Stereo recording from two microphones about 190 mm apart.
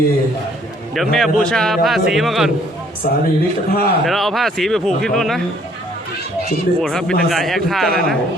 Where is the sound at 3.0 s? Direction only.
45° left (ahead or behind).